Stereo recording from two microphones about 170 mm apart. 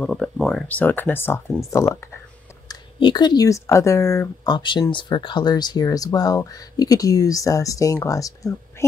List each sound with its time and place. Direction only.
0.0 s speech: 5° left (ahead or behind)
4.5 s speech: 25° left (ahead or behind)